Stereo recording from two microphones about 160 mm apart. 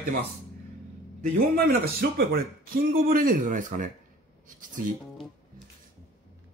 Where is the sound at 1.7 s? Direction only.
70° right (ahead or behind).